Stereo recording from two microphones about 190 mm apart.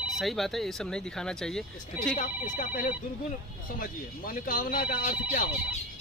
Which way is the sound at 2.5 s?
45° left (ahead or behind).